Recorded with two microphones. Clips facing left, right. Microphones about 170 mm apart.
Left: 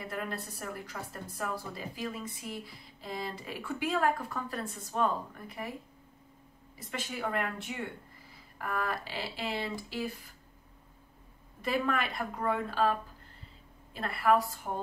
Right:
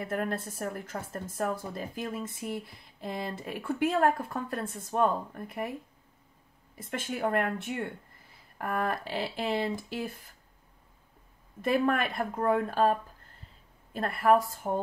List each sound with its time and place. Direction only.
0.0 s a woman's voice: 50° right (ahead or behind)
6.8 s a woman's voice: 50° right (ahead or behind)
11.6 s a woman's voice: 50° right (ahead or behind)
13.9 s a woman's voice: 50° right (ahead or behind)